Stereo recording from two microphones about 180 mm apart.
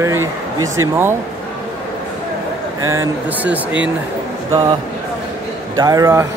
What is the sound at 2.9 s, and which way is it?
Speech, 10° right (ahead or behind).